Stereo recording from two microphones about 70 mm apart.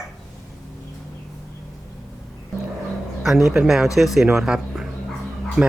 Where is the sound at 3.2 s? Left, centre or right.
Centre.